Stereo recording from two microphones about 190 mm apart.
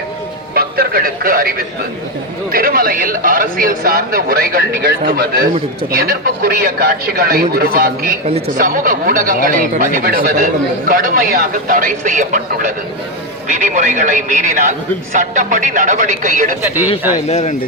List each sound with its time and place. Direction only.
0.5 s a man's voice: 50° right (ahead or behind)
16.6 s speech: 10° right (ahead or behind)
17.2 s speech: 35° left (ahead or behind)